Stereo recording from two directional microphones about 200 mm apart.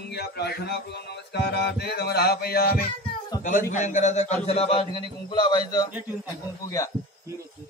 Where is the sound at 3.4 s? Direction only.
40° left (ahead or behind); by 5.6 s 20° left (ahead or behind).